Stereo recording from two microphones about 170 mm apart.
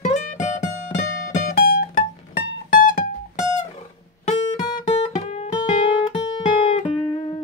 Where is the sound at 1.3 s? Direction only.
55° left (ahead or behind).